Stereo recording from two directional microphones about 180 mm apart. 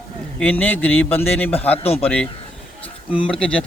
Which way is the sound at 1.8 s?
35° left (ahead or behind).